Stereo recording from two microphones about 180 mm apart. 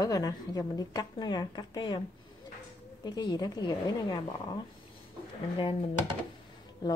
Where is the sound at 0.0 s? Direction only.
20° left (ahead or behind).